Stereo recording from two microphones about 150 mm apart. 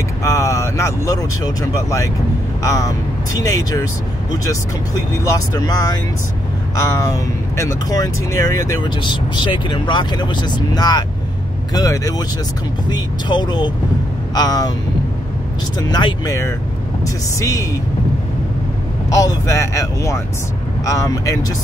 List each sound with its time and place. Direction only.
0.2 s speech: 20° left (ahead or behind)
5.2 s speech: 20° left (ahead or behind)
15.9 s speech: 30° left (ahead or behind)
17.4 s speech: 20° left (ahead or behind)
19.0 s speech: 25° left (ahead or behind)